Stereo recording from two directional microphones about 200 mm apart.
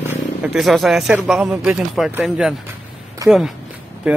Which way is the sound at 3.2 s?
15° right (ahead or behind).